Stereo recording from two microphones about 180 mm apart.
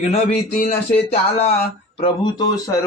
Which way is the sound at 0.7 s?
35° left (ahead or behind).